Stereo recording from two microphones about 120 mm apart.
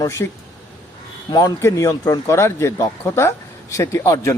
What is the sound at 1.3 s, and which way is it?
A man's voice, 30° left (ahead or behind).